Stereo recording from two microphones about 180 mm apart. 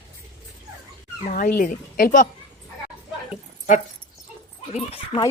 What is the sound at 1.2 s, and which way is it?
Speech, 50° left (ahead or behind).